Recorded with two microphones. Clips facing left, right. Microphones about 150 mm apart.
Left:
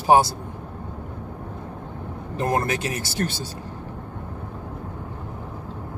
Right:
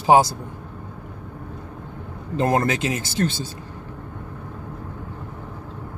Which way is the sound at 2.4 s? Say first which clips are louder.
Right 3 dB; 20° right (ahead or behind).